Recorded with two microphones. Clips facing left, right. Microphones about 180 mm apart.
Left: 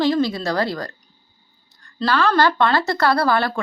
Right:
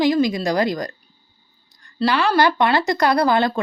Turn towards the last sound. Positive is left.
turn(degrees=-20)  # may be behind; listen again after turning